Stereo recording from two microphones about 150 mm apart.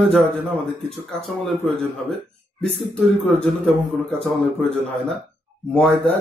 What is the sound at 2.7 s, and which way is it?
Speech, centre (ahead or behind).